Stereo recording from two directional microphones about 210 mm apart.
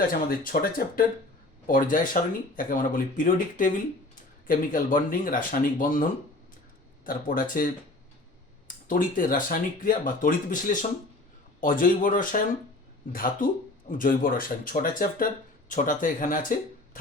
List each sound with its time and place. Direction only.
0.1 s speech: 45° left (ahead or behind)